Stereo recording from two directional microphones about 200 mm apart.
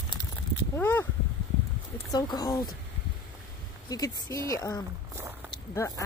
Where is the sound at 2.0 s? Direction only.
20° left (ahead or behind).